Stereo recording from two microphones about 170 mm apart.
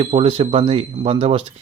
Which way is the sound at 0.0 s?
35° right (ahead or behind).